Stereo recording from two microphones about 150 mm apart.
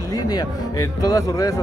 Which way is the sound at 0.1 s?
25° left (ahead or behind).